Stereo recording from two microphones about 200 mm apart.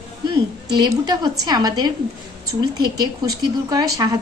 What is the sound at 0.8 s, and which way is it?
A woman's voice, 20° right (ahead or behind).